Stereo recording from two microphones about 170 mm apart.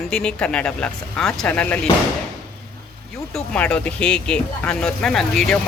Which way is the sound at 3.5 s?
5° left (ahead or behind).